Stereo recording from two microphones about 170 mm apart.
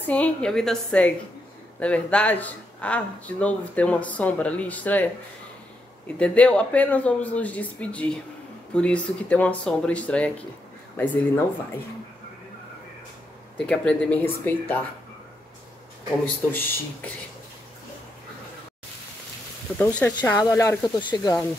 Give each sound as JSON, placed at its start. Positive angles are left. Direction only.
{"t": 0.0, "sound": "speech", "side_deg": 10}
{"t": 6.1, "sound": "speech", "side_deg": 5}
{"t": 13.6, "sound": "speech", "side_deg": 5}
{"t": 16.5, "sound": "speech", "side_deg": 10}
{"t": 19.8, "sound": "speech", "side_deg": 5}
{"t": 21.1, "sound": "speech", "side_deg": 20}